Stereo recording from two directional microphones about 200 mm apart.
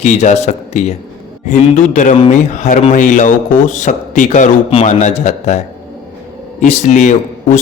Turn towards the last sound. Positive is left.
turn(degrees=35)  # may be behind; listen again after turning